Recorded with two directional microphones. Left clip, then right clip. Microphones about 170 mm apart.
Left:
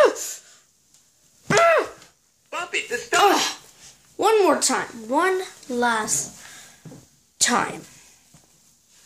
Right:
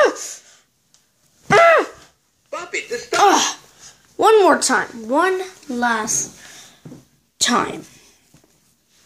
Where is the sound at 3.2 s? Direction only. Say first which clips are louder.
Right 6 dB; 20° right (ahead or behind).